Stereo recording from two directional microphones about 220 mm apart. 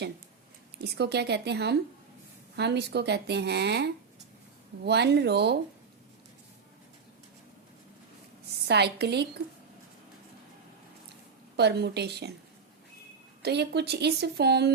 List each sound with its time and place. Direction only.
0.9 s speech: 50° right (ahead or behind)
8.6 s speech: 50° right (ahead or behind)
11.5 s speech: 50° right (ahead or behind)
13.4 s speech: 50° right (ahead or behind)